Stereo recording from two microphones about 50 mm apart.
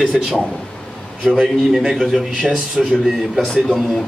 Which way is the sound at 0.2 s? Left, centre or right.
Centre.